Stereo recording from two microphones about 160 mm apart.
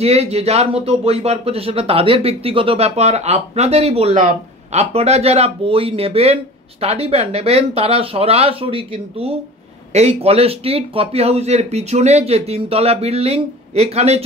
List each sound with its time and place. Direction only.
0.0 s speech: 40° right (ahead or behind)
4.2 s speech: 55° right (ahead or behind)
4.9 s speech: 40° right (ahead or behind)